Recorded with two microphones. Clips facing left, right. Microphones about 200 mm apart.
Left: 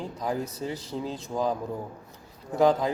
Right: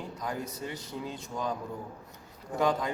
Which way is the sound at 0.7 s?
35° left (ahead or behind).